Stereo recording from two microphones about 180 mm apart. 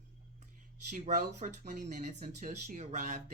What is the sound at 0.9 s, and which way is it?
Speech, 45° right (ahead or behind).